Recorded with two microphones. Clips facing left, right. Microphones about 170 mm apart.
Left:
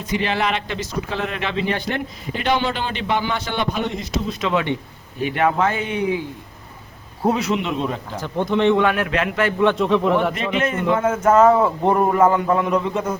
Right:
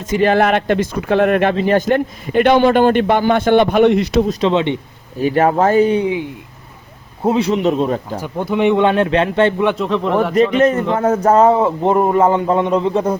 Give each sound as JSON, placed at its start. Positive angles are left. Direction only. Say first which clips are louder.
{"t": 0.0, "sound": "speech", "louder": "right 8 dB", "side_deg": -45}
{"t": 4.3, "sound": "speech", "louder": "right 6 dB", "side_deg": -30}
{"t": 5.2, "sound": "speech", "louder": "right 6 dB", "side_deg": -40}
{"t": 7.2, "sound": "speech", "louder": "right 5 dB", "side_deg": -25}
{"t": 8.2, "sound": "speech", "louder": "right 1 dB", "side_deg": -10}
{"t": 8.8, "sound": "speech", "louder": "right 6 dB", "side_deg": -25}
{"t": 9.7, "sound": "speech", "louder": "even", "side_deg": 0}
{"t": 10.6, "sound": "speech", "louder": "right 5 dB", "side_deg": -40}